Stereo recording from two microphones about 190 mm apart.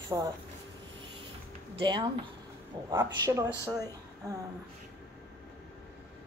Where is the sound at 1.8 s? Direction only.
25° right (ahead or behind).